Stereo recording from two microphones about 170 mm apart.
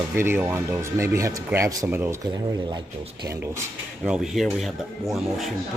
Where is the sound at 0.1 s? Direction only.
15° right (ahead or behind).